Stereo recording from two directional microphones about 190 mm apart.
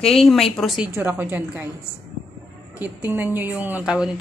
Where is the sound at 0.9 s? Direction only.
10° right (ahead or behind).